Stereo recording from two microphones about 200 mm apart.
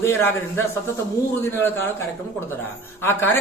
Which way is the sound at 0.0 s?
10° left (ahead or behind).